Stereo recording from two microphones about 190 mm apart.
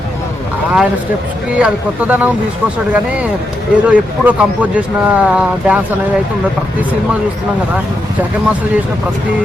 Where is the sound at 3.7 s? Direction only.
5° right (ahead or behind).